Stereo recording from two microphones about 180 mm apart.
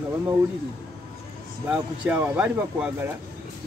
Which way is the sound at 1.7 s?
5° right (ahead or behind).